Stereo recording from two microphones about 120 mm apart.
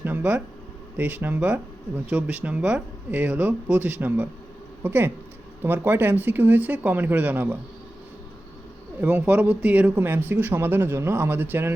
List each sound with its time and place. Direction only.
0.0 s a sound: 15° right (ahead or behind)
0.9 s speech: 15° right (ahead or behind)
9.0 s speech: 15° right (ahead or behind)